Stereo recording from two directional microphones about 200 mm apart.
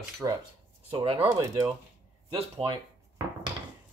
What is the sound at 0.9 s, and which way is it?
Speech, 25° right (ahead or behind).